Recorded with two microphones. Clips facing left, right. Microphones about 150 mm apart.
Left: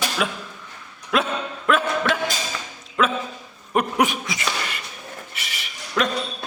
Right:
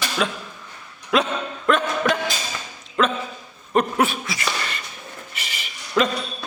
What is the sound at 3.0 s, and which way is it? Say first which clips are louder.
Dog: right 1 dB; 5° left (ahead or behind).